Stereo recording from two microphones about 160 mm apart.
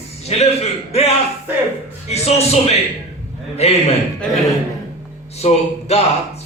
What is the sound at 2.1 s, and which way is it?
Speech, 40° left (ahead or behind).